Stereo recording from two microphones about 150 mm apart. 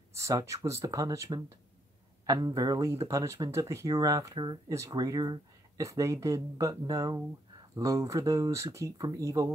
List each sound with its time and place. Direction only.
0.1 s speech: 20° right (ahead or behind)